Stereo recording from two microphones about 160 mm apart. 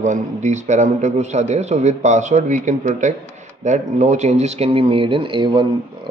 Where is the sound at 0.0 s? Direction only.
50° right (ahead or behind).